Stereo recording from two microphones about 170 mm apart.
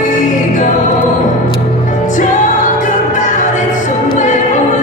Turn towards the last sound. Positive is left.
turn(degrees=45)  # may be behind; listen again after turning